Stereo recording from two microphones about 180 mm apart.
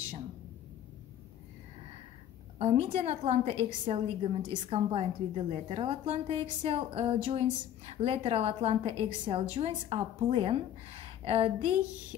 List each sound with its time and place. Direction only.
2.6 s a woman's voice: 35° right (ahead or behind)